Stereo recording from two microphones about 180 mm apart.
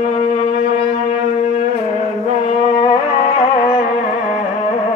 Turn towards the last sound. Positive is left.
turn(degrees=30)  # may be behind; listen again after turning